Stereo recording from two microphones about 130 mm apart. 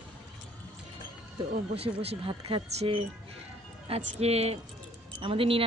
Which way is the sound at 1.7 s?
50° right (ahead or behind).